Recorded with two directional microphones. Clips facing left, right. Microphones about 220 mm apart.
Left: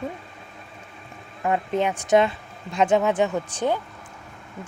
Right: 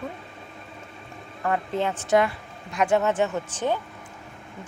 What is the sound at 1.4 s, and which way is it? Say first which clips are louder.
A woman's voice: left 3 dB; 15° left (ahead or behind).